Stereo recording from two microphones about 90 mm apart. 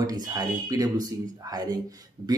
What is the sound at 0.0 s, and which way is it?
Speech, 45° right (ahead or behind).